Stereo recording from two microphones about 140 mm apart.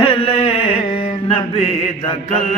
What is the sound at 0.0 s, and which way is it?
Music, 40° left (ahead or behind).